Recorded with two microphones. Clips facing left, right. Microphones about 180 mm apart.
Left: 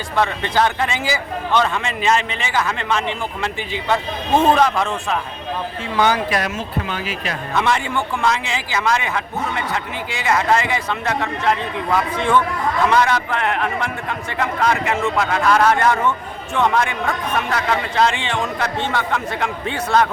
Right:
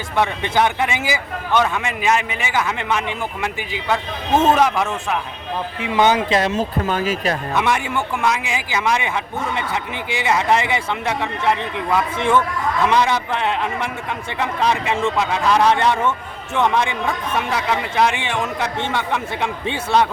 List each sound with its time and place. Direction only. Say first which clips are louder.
0.2 s a man's voice: even; 15° right (ahead or behind)
5.8 s a man's voice: right 2 dB; 20° right (ahead or behind); by 7.3 s 40° right (ahead or behind)
7.5 s a man's voice: left 4 dB; 10° right (ahead or behind)